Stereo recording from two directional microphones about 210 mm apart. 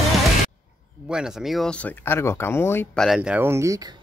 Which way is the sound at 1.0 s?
5° right (ahead or behind).